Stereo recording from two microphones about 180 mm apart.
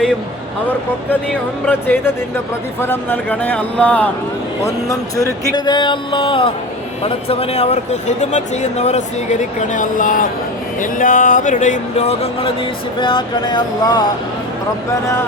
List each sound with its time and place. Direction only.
1.6 s speech: 10° left (ahead or behind)
4.6 s speech: 15° left (ahead or behind)